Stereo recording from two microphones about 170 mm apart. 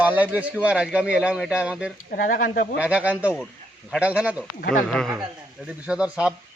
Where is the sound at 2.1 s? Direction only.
60° left (ahead or behind).